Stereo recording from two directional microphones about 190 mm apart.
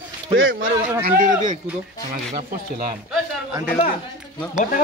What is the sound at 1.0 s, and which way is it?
Speech, 45° right (ahead or behind).